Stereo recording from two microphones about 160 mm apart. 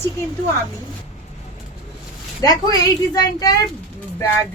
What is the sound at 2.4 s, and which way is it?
A woman's voice, 25° left (ahead or behind).